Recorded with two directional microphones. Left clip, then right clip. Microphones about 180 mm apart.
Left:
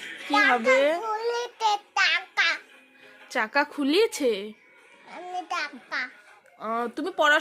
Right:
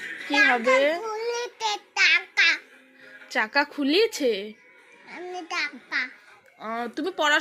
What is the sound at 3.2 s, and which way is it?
A child's voice, 25° left (ahead or behind).